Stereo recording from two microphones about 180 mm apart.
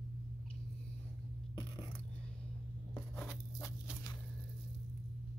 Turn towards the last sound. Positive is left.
turn(degrees=15)  # may be behind; listen again after turning